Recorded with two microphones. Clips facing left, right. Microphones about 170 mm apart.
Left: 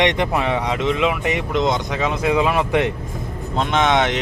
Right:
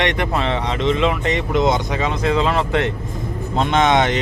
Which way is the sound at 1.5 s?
5° right (ahead or behind).